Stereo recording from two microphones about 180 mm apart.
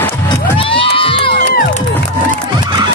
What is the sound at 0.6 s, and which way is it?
Crowd, 30° left (ahead or behind).